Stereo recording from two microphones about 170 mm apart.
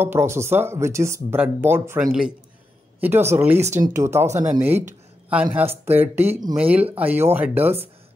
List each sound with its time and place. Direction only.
0.0 s speech: 15° right (ahead or behind)
3.0 s speech: 15° right (ahead or behind)